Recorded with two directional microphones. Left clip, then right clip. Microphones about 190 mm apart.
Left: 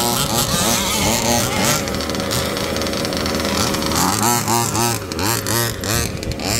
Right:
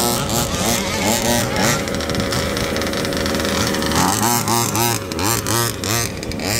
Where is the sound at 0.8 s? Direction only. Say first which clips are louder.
Left 2 dB; 65° left (ahead or behind).